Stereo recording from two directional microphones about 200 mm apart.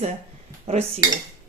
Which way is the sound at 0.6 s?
35° right (ahead or behind).